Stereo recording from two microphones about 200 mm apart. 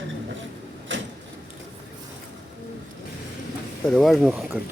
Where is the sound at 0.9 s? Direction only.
70° right (ahead or behind).